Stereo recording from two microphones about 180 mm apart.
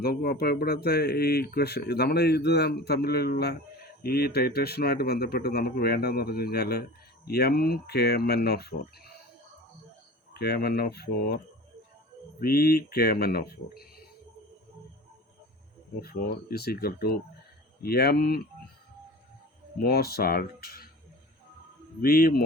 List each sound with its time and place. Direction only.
0.0 s speech: 60° left (ahead or behind)
10.3 s speech: 65° left (ahead or behind)
12.4 s speech: 55° left (ahead or behind)
16.0 s speech: 55° left (ahead or behind)
19.8 s speech: 60° left (ahead or behind)
22.0 s speech: 55° left (ahead or behind)